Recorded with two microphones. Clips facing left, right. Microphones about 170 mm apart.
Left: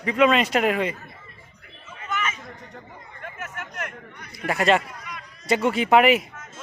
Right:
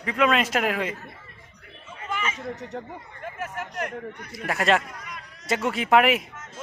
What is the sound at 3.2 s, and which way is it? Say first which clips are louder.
Speech: right 3 dB; 35° right (ahead or behind).